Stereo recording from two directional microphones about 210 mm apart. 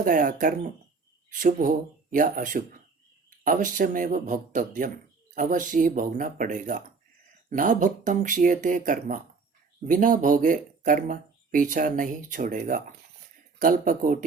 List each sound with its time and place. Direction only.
0.0 s speech: 40° right (ahead or behind)